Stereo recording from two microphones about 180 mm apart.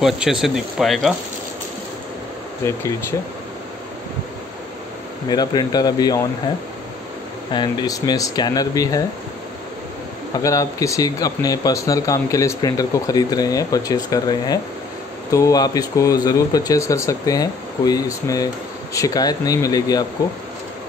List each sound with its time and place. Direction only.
0.0 s speech: 5° right (ahead or behind)
2.6 s speech: 15° left (ahead or behind)
5.3 s speech: 25° left (ahead or behind)
7.5 s speech: 25° left (ahead or behind)
10.3 s speech: 20° left (ahead or behind)